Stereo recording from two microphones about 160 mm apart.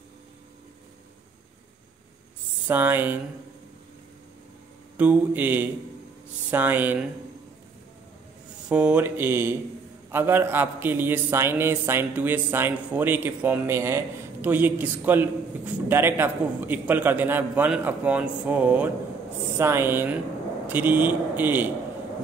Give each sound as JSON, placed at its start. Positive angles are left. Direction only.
{"t": 2.7, "sound": "a man's voice", "side_deg": -10}
{"t": 4.9, "sound": "a man's voice", "side_deg": -10}
{"t": 8.6, "sound": "a man's voice", "side_deg": -10}